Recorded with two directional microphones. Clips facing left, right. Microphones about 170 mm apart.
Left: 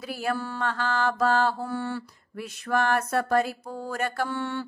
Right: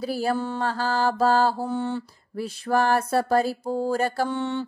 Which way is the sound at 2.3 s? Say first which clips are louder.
Right 4 dB; 30° right (ahead or behind).